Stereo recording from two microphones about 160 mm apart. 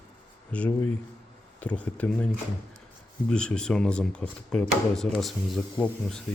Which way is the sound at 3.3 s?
5° left (ahead or behind).